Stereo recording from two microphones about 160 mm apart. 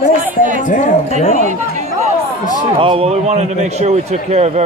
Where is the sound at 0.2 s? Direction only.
55° right (ahead or behind).